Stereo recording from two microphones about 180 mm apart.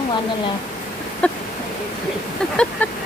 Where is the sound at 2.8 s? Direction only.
10° left (ahead or behind).